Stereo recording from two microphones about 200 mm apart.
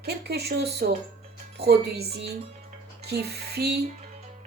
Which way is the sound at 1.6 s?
55° right (ahead or behind).